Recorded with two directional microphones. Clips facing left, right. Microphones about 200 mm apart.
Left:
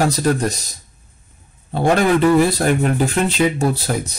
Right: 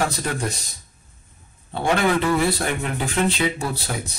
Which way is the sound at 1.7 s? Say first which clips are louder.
Left 5 dB; 40° left (ahead or behind).